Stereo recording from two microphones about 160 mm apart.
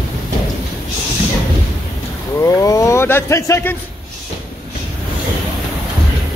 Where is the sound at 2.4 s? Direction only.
20° left (ahead or behind).